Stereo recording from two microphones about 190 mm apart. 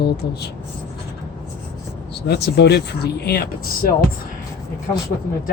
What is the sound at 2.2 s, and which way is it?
Speech, 60° left (ahead or behind).